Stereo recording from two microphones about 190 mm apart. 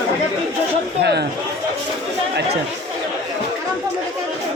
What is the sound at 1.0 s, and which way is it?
Chatter, 60° right (ahead or behind).